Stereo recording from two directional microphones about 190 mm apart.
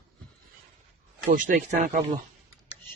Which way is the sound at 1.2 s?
45° right (ahead or behind).